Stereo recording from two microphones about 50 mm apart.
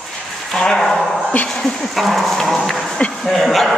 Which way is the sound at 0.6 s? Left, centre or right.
Centre.